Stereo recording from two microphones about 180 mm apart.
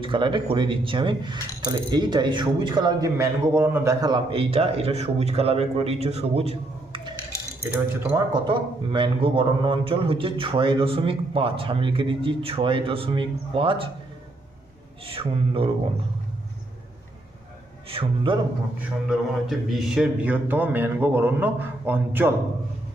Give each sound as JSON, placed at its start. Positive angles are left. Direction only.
{"t": 0.0, "sound": "speech", "side_deg": -25}
{"t": 8.3, "sound": "speech", "side_deg": -25}
{"t": 15.0, "sound": "speech", "side_deg": -30}
{"t": 17.8, "sound": "speech", "side_deg": -30}
{"t": 19.0, "sound": "speech", "side_deg": 0}